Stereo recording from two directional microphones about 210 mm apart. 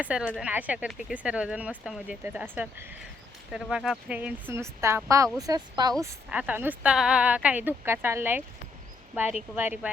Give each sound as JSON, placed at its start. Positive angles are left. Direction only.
{"t": 0.0, "sound": "speech", "side_deg": -5}
{"t": 9.6, "sound": "speech", "side_deg": -5}